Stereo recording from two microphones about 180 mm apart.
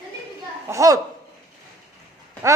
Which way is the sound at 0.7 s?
15° right (ahead or behind).